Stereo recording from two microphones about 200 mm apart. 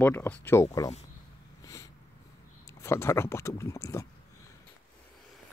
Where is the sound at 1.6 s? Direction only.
15° left (ahead or behind).